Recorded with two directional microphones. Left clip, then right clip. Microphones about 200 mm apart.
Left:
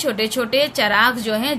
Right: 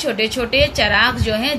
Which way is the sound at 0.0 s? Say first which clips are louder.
Right 1 dB; 50° left (ahead or behind).